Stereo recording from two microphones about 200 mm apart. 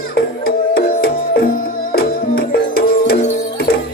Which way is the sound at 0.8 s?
50° left (ahead or behind).